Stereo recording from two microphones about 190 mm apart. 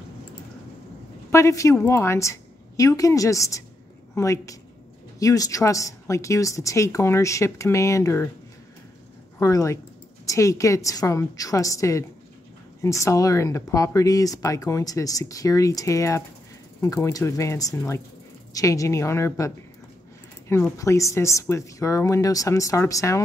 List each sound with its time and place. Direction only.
1.3 s speech: 15° left (ahead or behind)
9.4 s speech: 15° left (ahead or behind)
20.7 s speech: 15° left (ahead or behind)